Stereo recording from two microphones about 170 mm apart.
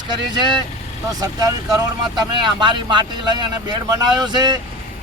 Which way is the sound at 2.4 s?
25° right (ahead or behind).